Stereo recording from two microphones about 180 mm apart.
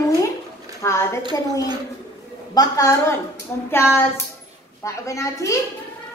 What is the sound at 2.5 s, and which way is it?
Speech, 20° left (ahead or behind).